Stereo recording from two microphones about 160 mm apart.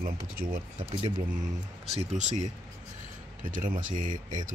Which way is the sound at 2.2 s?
50° right (ahead or behind).